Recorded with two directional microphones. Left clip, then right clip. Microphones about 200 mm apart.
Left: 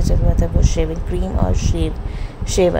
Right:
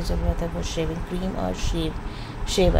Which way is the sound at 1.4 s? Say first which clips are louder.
Left 4 dB; 25° left (ahead or behind).